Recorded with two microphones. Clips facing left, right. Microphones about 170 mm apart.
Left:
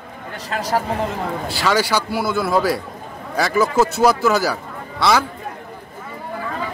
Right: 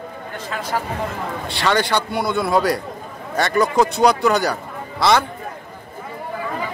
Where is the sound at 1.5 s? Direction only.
5° left (ahead or behind).